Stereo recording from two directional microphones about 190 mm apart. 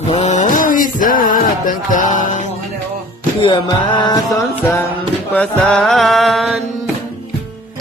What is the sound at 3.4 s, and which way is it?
Music, 25° left (ahead or behind).